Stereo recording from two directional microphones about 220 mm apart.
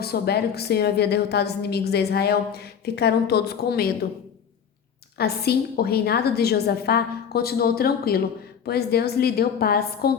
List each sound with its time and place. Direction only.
0.0 s a woman's voice: 45° left (ahead or behind)
5.1 s a woman's voice: 45° left (ahead or behind)